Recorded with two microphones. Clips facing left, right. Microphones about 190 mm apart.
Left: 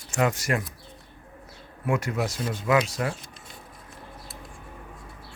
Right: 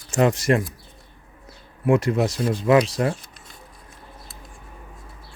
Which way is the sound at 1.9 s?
30° right (ahead or behind).